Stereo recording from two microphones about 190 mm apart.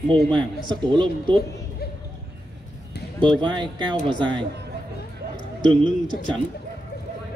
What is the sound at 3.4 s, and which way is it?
Speech, 25° right (ahead or behind).